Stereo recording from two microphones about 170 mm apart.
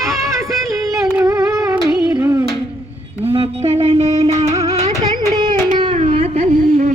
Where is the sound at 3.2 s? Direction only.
35° right (ahead or behind).